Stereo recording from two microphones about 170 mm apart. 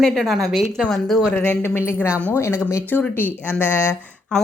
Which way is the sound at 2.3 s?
15° left (ahead or behind).